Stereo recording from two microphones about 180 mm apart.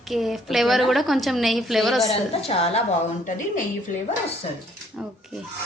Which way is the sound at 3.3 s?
45° left (ahead or behind).